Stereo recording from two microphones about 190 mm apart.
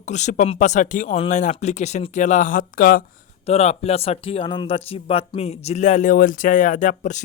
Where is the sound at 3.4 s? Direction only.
35° left (ahead or behind).